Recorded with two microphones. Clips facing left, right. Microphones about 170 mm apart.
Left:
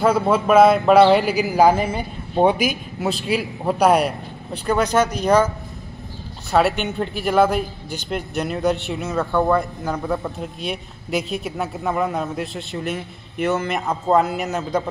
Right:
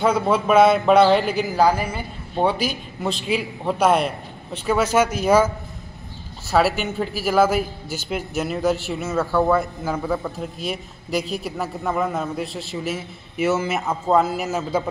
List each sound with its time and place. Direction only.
0.0 s a man's voice: 5° left (ahead or behind)
1.7 s a man's voice: 25° left (ahead or behind); by 3.7 s 5° left (ahead or behind)
3.7 s a man's voice: 40° left (ahead or behind)
4.6 s speech: 5° right (ahead or behind)
6.5 s a man's voice: centre (ahead or behind)